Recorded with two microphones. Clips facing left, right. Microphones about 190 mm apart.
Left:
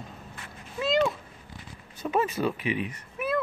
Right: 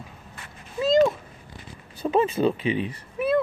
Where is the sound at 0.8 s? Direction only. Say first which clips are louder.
Right 6 dB; 40° right (ahead or behind).